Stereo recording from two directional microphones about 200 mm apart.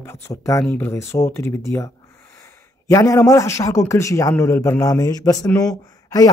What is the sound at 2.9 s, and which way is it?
A man's voice, 15° left (ahead or behind).